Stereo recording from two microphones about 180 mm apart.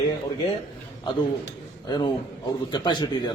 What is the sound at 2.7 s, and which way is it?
Speech, 25° left (ahead or behind).